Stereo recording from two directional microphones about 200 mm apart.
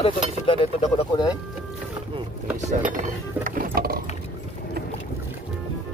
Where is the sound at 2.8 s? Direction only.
40° right (ahead or behind).